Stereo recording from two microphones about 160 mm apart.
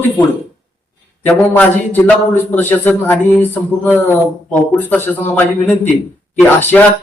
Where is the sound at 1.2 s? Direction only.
10° left (ahead or behind).